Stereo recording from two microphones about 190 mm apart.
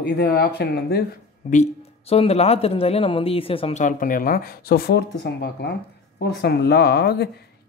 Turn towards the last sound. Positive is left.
turn(degrees=60)  # may be behind; listen again after turning